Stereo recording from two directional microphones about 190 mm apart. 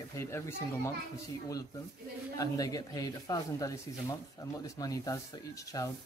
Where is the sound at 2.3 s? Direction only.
20° left (ahead or behind).